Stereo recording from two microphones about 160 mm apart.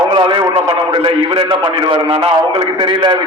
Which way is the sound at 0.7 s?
35° right (ahead or behind).